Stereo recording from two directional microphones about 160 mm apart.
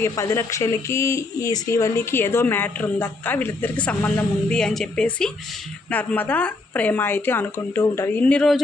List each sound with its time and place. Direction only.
0.0 s speech: 20° left (ahead or behind)